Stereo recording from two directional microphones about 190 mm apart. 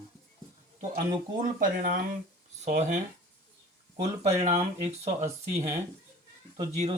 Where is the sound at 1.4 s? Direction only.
50° right (ahead or behind).